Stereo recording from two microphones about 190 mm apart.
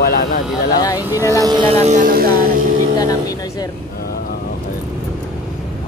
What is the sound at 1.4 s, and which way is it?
Music, 25° right (ahead or behind).